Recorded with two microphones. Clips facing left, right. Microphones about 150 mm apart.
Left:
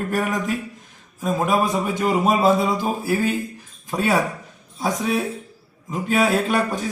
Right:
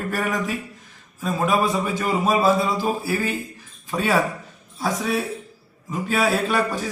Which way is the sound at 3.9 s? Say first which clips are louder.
Left 1 dB; 15° left (ahead or behind).